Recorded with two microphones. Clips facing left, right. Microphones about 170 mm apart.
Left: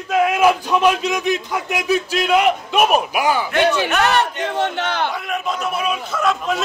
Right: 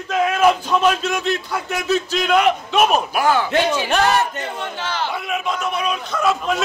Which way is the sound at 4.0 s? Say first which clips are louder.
Even; 70° left (ahead or behind).